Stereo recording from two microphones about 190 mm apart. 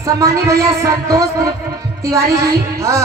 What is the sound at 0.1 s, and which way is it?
Speech, 15° right (ahead or behind).